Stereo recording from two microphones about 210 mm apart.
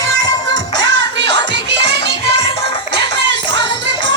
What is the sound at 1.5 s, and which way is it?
Music, 55° right (ahead or behind).